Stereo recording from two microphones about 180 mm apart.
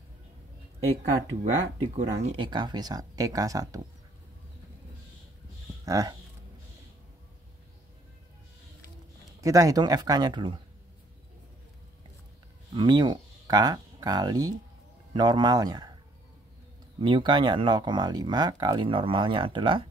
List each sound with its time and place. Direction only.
2.0 s speech: 35° right (ahead or behind); by 3.8 s 20° right (ahead or behind)
5.9 s speech: 20° right (ahead or behind)
9.4 s speech: 20° right (ahead or behind)
12.7 s speech: 25° right (ahead or behind)
17.0 s speech: 25° right (ahead or behind)